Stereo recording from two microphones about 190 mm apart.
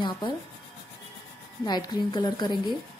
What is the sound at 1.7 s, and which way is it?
Speech, 20° left (ahead or behind).